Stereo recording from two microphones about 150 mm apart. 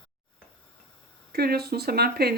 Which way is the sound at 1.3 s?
90° right.